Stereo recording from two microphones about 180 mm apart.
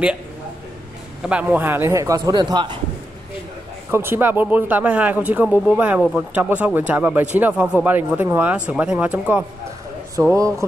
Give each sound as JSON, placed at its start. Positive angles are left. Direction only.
{"t": 1.2, "sound": "speech", "side_deg": -5}
{"t": 3.9, "sound": "speech", "side_deg": -10}
{"t": 10.2, "sound": "speech", "side_deg": -20}